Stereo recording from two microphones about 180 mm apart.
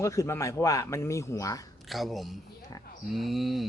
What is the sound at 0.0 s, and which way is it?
Speech, 15° left (ahead or behind).